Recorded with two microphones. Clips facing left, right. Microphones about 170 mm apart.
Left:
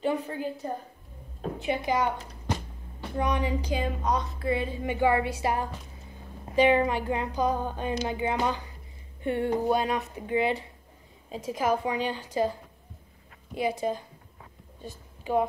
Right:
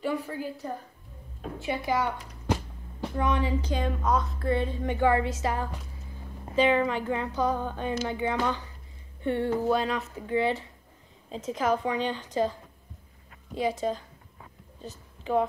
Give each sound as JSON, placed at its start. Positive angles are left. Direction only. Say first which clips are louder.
{"t": 0.0, "sound": "a woman's voice", "louder": "left 2 dB", "side_deg": 20}
{"t": 1.6, "sound": "a woman's voice", "louder": "left 1 dB", "side_deg": 20}
{"t": 4.0, "sound": "a woman's voice", "louder": "right 1 dB", "side_deg": 0}
{"t": 13.6, "sound": "a woman's voice", "louder": "even", "side_deg": 10}
{"t": 14.8, "sound": "a sound", "louder": "even", "side_deg": 10}